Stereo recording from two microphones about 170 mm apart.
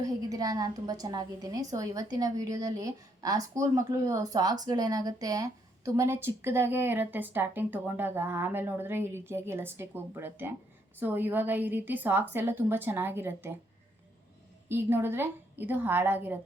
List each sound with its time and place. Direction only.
0.0 s a woman's voice: 20° right (ahead or behind)
14.7 s a woman's voice: 15° right (ahead or behind)